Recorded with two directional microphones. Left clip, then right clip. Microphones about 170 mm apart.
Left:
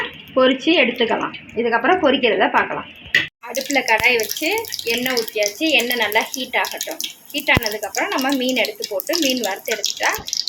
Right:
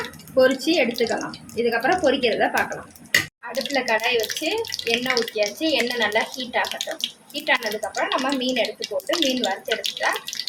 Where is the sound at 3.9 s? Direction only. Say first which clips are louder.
Left 6 dB; 25° left (ahead or behind).